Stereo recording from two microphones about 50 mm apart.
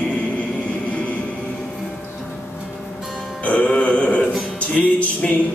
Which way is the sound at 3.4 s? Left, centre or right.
Left.